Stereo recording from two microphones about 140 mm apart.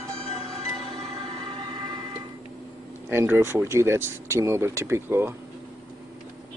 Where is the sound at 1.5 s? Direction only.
35° right (ahead or behind).